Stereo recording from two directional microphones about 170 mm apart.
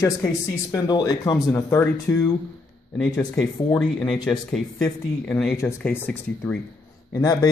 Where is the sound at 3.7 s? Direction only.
5° left (ahead or behind).